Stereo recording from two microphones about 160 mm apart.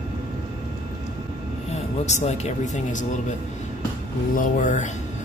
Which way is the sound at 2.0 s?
45° left (ahead or behind).